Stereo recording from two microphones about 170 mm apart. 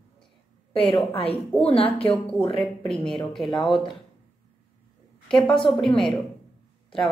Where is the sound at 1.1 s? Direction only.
35° left (ahead or behind).